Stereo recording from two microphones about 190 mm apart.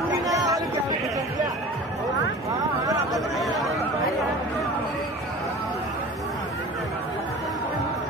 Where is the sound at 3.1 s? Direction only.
Centre (ahead or behind).